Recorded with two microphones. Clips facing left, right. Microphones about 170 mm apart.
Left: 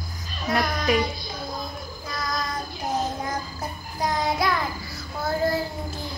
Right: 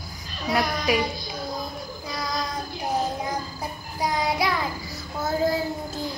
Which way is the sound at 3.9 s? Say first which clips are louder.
Even; 10° right (ahead or behind).